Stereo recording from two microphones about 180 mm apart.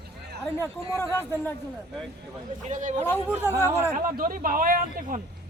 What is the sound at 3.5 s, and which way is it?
Speech, 15° left (ahead or behind).